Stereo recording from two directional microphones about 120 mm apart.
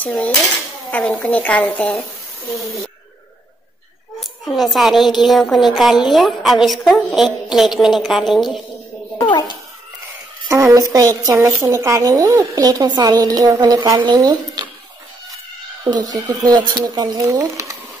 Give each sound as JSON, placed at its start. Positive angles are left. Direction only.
{"t": 0.0, "sound": "a woman's voice", "side_deg": 10}
{"t": 4.2, "sound": "a woman's voice", "side_deg": 0}
{"t": 10.5, "sound": "a woman's voice", "side_deg": -25}
{"t": 15.8, "sound": "a woman's voice", "side_deg": -35}